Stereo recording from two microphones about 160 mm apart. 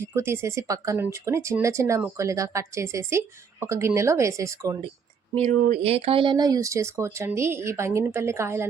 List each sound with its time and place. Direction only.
0.0 s speech: 15° right (ahead or behind)
5.3 s speech: 40° right (ahead or behind); by 8.6 s 15° right (ahead or behind)